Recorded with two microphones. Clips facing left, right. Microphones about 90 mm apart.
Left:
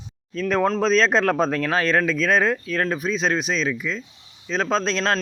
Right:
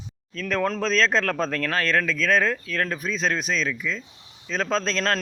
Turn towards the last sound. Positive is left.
turn(degrees=5)  # may be behind; listen again after turning